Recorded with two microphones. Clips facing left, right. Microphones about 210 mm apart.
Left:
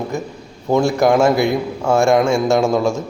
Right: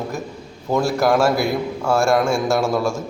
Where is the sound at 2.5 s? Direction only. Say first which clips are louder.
Left 4 dB; 20° left (ahead or behind).